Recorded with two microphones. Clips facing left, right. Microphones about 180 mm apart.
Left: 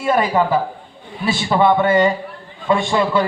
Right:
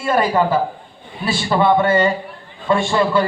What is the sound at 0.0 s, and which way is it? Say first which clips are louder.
A man's voice: even; 15° left (ahead or behind).